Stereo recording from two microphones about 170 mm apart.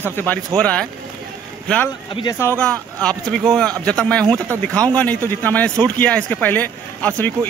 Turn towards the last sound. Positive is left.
turn(degrees=10)  # may be behind; listen again after turning